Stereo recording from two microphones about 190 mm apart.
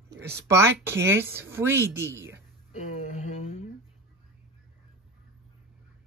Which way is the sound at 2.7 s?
35° left (ahead or behind).